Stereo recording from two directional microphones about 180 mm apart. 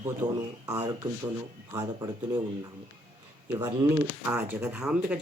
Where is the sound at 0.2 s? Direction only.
10° right (ahead or behind).